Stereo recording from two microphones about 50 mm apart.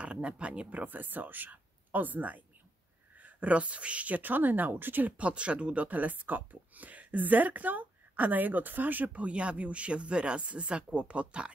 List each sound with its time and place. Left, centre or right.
0.0 s a woman's voice: right